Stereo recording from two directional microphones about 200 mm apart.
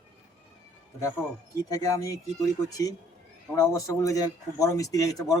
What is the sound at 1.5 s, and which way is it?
Speech, 15° left (ahead or behind).